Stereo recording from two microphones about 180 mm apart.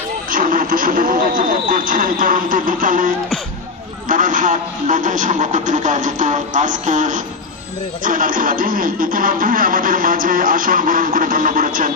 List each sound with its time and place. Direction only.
0.3 s a sound: 50° right (ahead or behind)
1.7 s music: 50° right (ahead or behind)
4.1 s music: 45° right (ahead or behind)